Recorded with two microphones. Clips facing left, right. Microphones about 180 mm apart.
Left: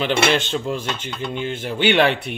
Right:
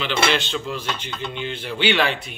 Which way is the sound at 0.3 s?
45° left (ahead or behind).